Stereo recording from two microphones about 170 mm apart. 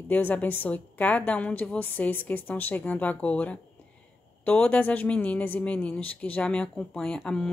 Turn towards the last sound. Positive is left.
turn(degrees=5)  # may be behind; listen again after turning